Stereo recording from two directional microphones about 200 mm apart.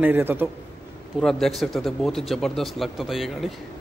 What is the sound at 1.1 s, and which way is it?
Speech, centre (ahead or behind).